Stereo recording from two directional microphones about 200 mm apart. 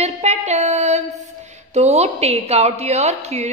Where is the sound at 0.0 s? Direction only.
35° right (ahead or behind).